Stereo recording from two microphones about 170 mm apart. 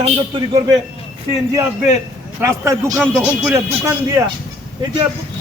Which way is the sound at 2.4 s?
15° right (ahead or behind).